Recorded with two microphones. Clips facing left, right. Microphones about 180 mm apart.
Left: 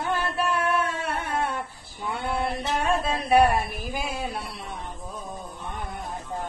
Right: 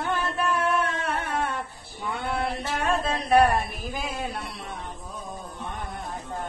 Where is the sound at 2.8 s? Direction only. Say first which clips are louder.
Right 1 dB; 10° left (ahead or behind).